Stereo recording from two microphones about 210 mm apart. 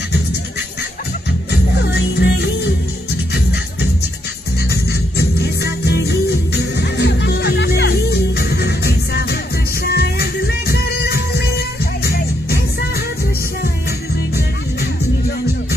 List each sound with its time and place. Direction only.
1.5 s music: 50° left (ahead or behind)
4.6 s music: 50° left (ahead or behind)